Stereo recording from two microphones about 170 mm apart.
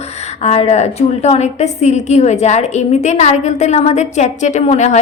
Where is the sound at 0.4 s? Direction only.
40° left (ahead or behind).